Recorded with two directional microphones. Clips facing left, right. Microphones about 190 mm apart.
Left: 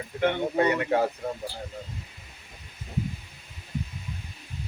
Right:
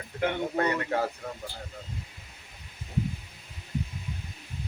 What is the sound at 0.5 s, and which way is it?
Speech, 15° left (ahead or behind).